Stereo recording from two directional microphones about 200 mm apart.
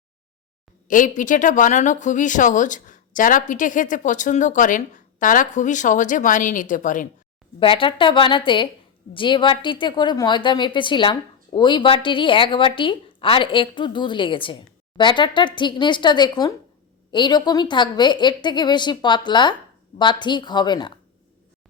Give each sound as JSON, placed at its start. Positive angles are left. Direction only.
{"t": 0.9, "sound": "speech", "side_deg": 40}
{"t": 7.6, "sound": "a woman's voice", "side_deg": 25}